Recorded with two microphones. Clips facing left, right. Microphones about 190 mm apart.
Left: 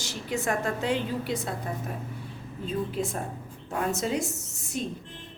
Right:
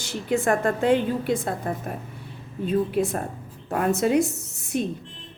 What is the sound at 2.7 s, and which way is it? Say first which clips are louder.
A woman's voice: right 7 dB; 60° right (ahead or behind).